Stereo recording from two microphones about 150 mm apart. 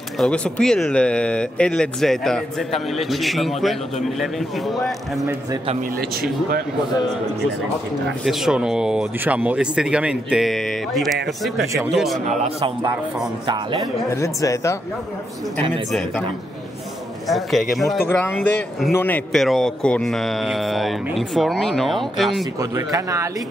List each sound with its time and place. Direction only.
0.2 s speech: 5° left (ahead or behind)
8.2 s speech: centre (ahead or behind)
12.3 s speech: 50° right (ahead or behind)
14.0 s speech: 20° left (ahead or behind)
15.9 s speech: centre (ahead or behind)
17.3 s speech: centre (ahead or behind)
18.0 s speech: 15° left (ahead or behind)
22.6 s speech: 20° right (ahead or behind)